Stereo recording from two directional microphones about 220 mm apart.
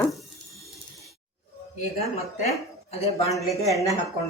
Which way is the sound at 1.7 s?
35° left (ahead or behind).